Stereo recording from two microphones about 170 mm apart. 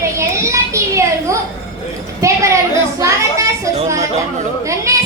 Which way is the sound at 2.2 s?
20° right (ahead or behind).